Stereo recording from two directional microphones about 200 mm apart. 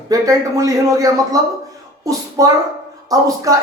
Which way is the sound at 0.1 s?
15° right (ahead or behind).